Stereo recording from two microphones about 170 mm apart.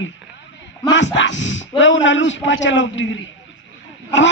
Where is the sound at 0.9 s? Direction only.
90° left.